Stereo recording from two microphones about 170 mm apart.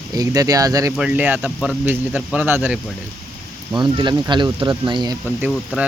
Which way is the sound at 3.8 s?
25° right (ahead or behind).